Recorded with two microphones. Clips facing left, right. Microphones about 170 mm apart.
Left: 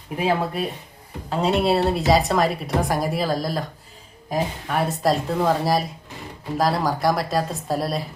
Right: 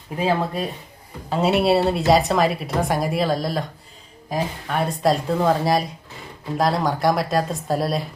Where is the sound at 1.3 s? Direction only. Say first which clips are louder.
Right 2 dB; 5° right (ahead or behind).